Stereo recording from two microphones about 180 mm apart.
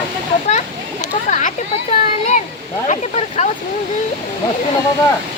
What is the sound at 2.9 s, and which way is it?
Speech, 40° left (ahead or behind).